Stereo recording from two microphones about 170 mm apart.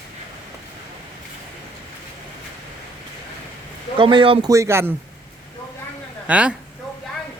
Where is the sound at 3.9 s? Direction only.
30° right (ahead or behind).